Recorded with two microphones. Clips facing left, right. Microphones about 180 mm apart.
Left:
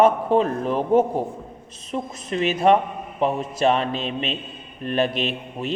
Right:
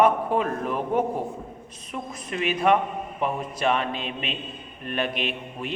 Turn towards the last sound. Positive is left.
turn(degrees=30)  # may be behind; listen again after turning